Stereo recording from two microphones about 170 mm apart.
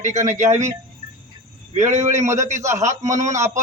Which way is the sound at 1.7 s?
40° right (ahead or behind).